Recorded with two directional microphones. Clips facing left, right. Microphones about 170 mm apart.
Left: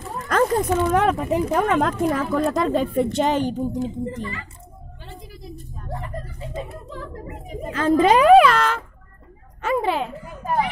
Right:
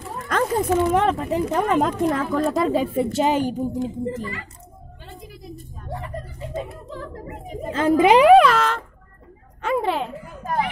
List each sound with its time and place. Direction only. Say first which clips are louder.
0.3 s a sound: left 1 dB; 5° right (ahead or behind)
1.0 s a woman's voice: left 1 dB; 10° left (ahead or behind); by 3.8 s 10° right (ahead or behind)
7.6 s a woman's voice: right 2 dB; 25° right (ahead or behind)
8.0 s speech: right 1 dB; 15° right (ahead or behind)
8.4 s a woman's voice: left 1 dB; centre (ahead or behind)
9.6 s a sound: even; centre (ahead or behind)